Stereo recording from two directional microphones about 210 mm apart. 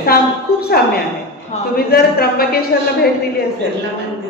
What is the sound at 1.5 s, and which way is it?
Speech, 30° left (ahead or behind).